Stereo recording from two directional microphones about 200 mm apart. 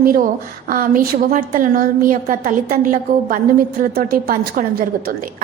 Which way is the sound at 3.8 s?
45° right (ahead or behind).